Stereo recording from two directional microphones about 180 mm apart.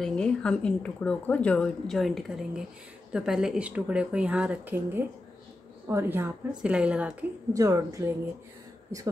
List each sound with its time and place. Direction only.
0.0 s speech: 5° left (ahead or behind)
7.5 s speech: 20° right (ahead or behind)